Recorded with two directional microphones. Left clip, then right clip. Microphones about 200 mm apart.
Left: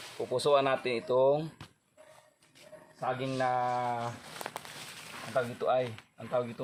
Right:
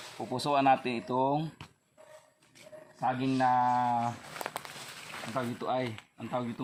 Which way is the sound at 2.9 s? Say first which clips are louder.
Right 3 dB; 15° left (ahead or behind).